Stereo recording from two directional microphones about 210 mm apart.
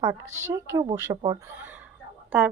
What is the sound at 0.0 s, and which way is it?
Speech, 15° right (ahead or behind).